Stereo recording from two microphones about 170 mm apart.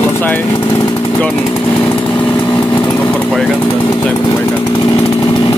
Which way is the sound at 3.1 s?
5° left (ahead or behind).